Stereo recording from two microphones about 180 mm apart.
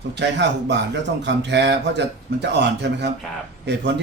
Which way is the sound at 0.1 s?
75° right (ahead or behind).